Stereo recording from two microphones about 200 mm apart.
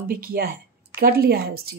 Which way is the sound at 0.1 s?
50° right (ahead or behind).